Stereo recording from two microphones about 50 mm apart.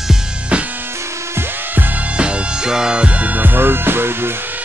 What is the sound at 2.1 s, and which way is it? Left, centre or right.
Music, right.